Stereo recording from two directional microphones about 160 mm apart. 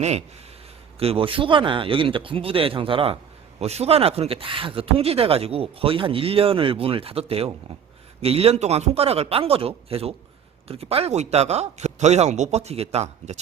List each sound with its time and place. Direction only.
0.9 s speech: 35° right (ahead or behind)